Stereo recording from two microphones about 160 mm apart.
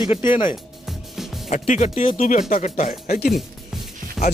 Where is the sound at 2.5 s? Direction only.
55° left (ahead or behind).